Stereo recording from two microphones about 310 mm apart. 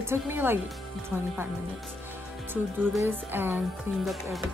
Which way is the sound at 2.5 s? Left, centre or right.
Centre.